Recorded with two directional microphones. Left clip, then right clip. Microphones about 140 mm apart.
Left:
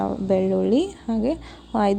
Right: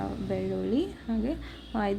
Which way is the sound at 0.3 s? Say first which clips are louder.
Left 11 dB; 50° left (ahead or behind).